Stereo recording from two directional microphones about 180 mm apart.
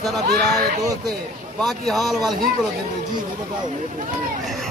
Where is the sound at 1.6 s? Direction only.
Centre (ahead or behind).